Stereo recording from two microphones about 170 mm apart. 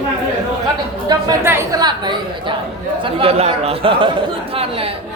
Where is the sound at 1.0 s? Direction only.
20° right (ahead or behind).